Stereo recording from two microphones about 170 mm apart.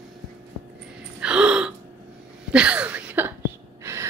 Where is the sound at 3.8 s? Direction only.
15° right (ahead or behind).